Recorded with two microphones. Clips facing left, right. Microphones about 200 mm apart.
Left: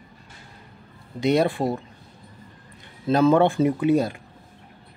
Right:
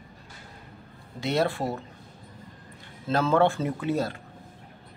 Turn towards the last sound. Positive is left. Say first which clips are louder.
# left 7 dB
turn(degrees=15)  # may be behind; listen again after turning